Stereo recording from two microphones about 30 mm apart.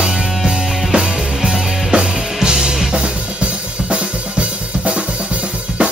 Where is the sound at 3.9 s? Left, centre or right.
Right.